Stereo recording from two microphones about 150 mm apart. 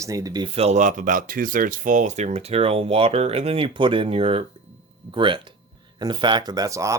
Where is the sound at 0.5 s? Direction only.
45° right (ahead or behind).